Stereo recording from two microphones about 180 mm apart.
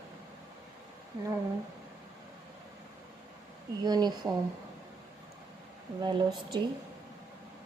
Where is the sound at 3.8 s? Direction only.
25° right (ahead or behind).